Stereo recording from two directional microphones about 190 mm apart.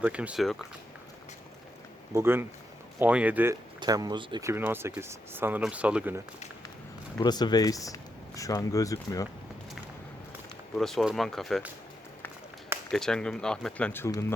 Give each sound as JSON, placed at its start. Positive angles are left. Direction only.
{"t": 0.0, "sound": "speech", "side_deg": -5}
{"t": 2.1, "sound": "speech", "side_deg": -10}
{"t": 7.2, "sound": "speech", "side_deg": 20}
{"t": 10.8, "sound": "speech", "side_deg": 0}
{"t": 12.9, "sound": "speech", "side_deg": 5}